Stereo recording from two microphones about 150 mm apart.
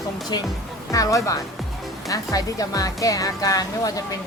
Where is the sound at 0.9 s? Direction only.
20° left (ahead or behind).